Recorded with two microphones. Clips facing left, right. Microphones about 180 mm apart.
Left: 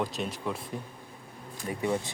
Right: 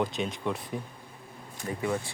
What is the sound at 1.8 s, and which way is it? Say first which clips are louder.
Speech: left 1 dB; 20° left (ahead or behind).